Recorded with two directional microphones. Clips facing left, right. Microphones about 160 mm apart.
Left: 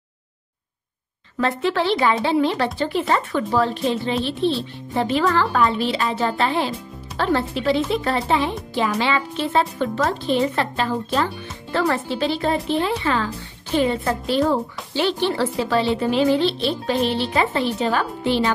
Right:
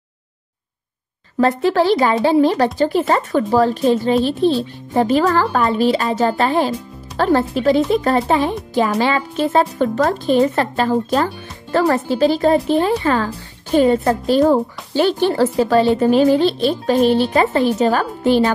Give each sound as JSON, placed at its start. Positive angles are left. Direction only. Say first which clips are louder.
{"t": 1.4, "sound": "speech", "louder": "right 6 dB", "side_deg": -40}